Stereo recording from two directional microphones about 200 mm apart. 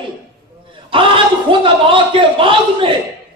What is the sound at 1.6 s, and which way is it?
Chuckle, 25° right (ahead or behind).